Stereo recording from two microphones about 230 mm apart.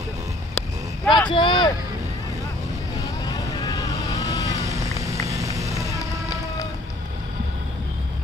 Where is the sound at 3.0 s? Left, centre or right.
Centre.